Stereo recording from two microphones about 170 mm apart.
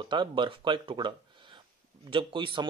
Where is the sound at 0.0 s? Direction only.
30° right (ahead or behind).